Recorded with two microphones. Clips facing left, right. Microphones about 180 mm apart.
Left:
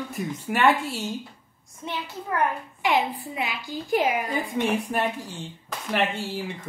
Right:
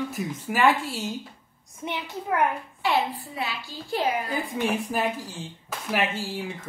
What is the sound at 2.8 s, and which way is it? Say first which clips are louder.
A child's voice: left 1 dB; 15° left (ahead or behind).